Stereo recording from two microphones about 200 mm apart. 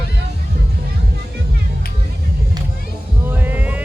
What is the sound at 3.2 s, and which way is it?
Music, 10° right (ahead or behind).